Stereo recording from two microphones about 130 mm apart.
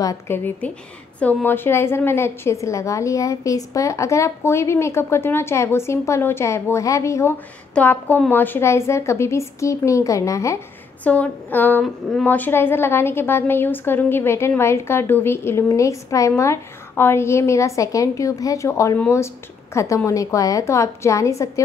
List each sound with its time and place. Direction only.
0.3 s a woman's voice: 15° left (ahead or behind)
11.1 s a woman's voice: 10° left (ahead or behind)
11.8 s speech: 5° left (ahead or behind)
12.3 s a woman's voice: 15° left (ahead or behind)